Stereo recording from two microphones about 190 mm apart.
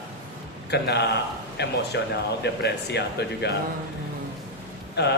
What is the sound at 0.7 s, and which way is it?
A man's voice, 60° left (ahead or behind).